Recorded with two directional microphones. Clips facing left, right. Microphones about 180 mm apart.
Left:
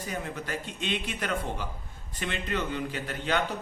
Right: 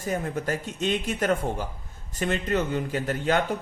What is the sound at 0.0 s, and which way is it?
A man's voice, 45° right (ahead or behind).